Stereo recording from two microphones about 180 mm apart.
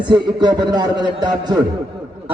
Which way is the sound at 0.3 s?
25° right (ahead or behind).